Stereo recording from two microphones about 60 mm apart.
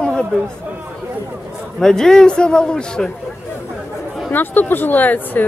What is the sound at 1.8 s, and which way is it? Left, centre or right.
A man's voice, centre.